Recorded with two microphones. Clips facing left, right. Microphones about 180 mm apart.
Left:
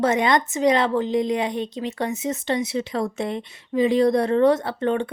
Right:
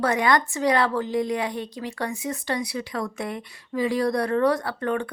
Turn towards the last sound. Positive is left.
turn(degrees=25)  # may be behind; listen again after turning